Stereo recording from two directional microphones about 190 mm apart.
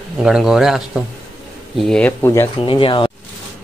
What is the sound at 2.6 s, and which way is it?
Speech, 30° left (ahead or behind).